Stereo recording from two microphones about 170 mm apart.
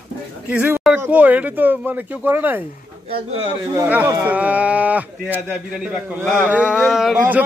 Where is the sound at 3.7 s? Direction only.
10° right (ahead or behind).